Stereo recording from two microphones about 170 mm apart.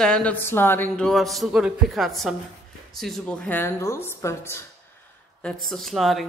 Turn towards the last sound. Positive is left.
turn(degrees=0)  # may be behind; listen again after turning